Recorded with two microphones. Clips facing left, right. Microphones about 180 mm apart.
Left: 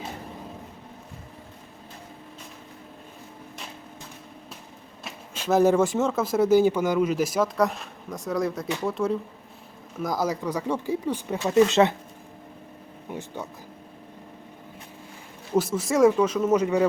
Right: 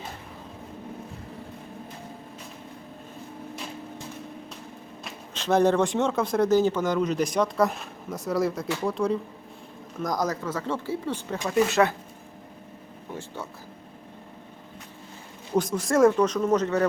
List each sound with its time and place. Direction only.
5.0 s speech: 5° left (ahead or behind)
13.1 s speech: 15° left (ahead or behind)
15.5 s speech: 5° left (ahead or behind)